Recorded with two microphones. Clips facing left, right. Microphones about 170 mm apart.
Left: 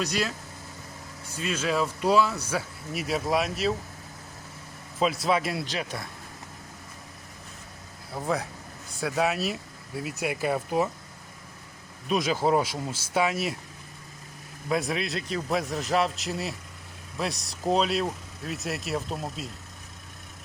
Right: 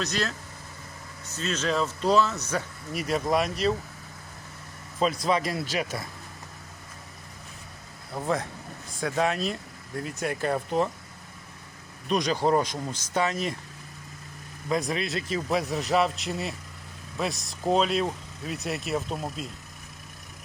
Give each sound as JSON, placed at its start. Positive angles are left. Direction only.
{"t": 0.0, "sound": "speech", "side_deg": 10}
{"t": 4.9, "sound": "speech", "side_deg": 0}
{"t": 5.6, "sound": "speech", "side_deg": -10}
{"t": 8.1, "sound": "speech", "side_deg": 0}
{"t": 12.0, "sound": "speech", "side_deg": 5}
{"t": 14.7, "sound": "speech", "side_deg": 0}